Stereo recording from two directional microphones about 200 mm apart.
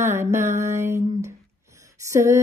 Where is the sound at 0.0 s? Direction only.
15° right (ahead or behind).